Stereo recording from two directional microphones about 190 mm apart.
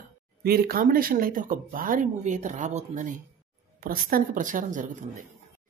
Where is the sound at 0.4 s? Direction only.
50° right (ahead or behind).